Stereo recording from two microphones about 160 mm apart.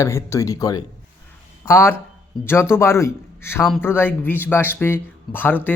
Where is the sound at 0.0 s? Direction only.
15° left (ahead or behind).